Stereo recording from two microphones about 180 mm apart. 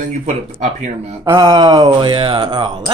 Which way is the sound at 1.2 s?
25° right (ahead or behind).